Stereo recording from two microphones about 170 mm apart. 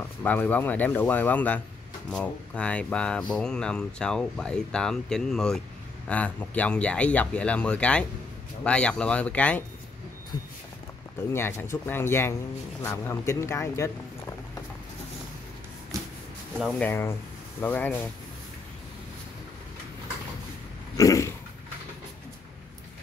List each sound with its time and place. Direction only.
0.2 s speech: 10° left (ahead or behind)
10.3 s speech: 25° left (ahead or behind)
11.3 s speech: 15° left (ahead or behind)
16.7 s speech: 10° left (ahead or behind)
20.9 s dog: 20° left (ahead or behind)